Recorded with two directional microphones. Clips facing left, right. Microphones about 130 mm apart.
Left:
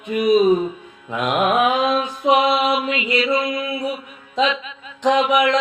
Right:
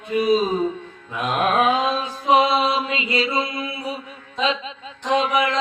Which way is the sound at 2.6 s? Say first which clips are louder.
Left 2 dB; 30° right (ahead or behind).